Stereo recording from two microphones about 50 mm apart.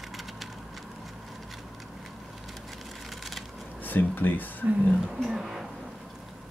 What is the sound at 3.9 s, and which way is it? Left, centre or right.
Speech, left.